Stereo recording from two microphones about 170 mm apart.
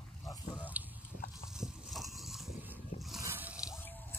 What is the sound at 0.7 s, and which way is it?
Biting, 10° right (ahead or behind).